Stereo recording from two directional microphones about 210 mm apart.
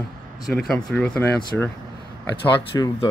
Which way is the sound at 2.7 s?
15° left (ahead or behind).